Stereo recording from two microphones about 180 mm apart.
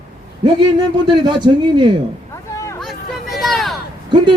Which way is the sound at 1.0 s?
25° right (ahead or behind).